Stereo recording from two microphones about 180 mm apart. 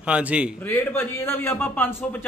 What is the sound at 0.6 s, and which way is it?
A man's voice, 15° left (ahead or behind).